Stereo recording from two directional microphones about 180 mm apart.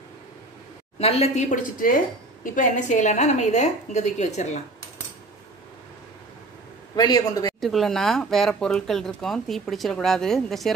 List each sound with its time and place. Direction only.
0.9 s a woman's voice: 35° left (ahead or behind)
7.0 s a man's voice: 20° left (ahead or behind)
7.6 s speech: centre (ahead or behind)